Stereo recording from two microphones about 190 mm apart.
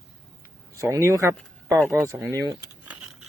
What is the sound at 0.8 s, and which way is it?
Speech, 15° right (ahead or behind).